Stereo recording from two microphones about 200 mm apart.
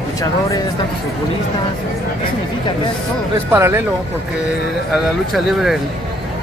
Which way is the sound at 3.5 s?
10° right (ahead or behind).